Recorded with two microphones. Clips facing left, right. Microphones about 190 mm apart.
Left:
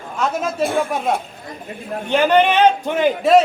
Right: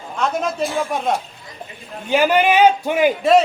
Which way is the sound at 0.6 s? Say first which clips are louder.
Left 5 dB; 55° left (ahead or behind).